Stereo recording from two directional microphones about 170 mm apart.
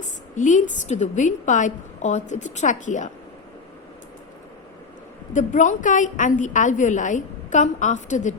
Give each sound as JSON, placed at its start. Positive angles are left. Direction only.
{"t": 0.3, "sound": "a woman's voice", "side_deg": 45}
{"t": 5.3, "sound": "a woman's voice", "side_deg": 45}